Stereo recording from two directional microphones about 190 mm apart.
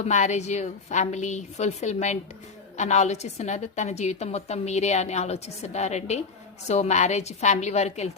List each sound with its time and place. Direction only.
0.0 s a woman's voice: 40° left (ahead or behind)